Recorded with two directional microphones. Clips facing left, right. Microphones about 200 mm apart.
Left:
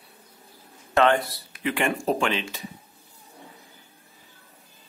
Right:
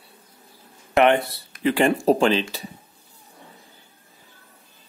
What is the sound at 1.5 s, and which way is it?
Speech, 35° right (ahead or behind).